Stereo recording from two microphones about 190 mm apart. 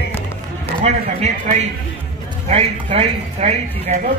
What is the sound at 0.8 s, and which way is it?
Speech, 35° right (ahead or behind).